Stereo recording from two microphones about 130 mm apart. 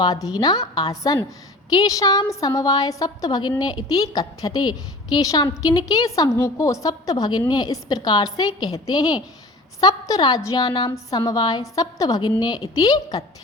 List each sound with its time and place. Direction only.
0.0 s a woman's voice: 30° left (ahead or behind)